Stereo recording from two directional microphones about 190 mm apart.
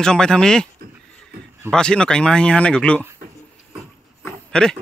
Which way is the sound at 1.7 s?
5° left (ahead or behind).